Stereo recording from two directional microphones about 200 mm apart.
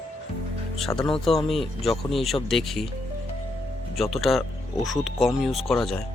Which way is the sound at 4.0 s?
Centre (ahead or behind).